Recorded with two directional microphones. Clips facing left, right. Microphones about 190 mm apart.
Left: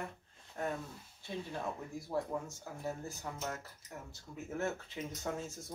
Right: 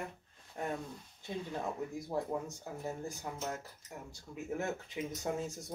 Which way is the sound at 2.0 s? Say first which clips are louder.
Left 1 dB; 20° right (ahead or behind).